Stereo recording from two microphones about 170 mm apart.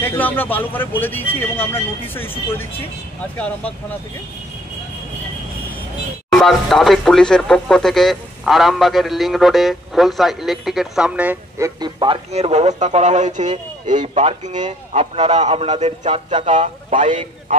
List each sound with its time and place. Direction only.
0.0 s speech: 10° left (ahead or behind)
6.3 s speech: centre (ahead or behind); by 12.2 s 25° right (ahead or behind)
12.3 s a man's voice: 40° right (ahead or behind)